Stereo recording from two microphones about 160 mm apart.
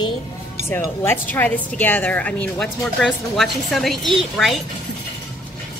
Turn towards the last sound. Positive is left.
turn(degrees=0)  # may be behind; listen again after turning